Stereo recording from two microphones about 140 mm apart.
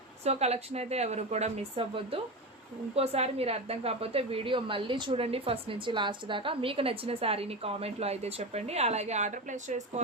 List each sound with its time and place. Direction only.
0.3 s a woman's voice: 50° right (ahead or behind)